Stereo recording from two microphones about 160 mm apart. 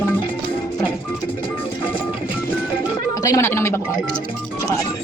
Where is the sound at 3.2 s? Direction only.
20° left (ahead or behind).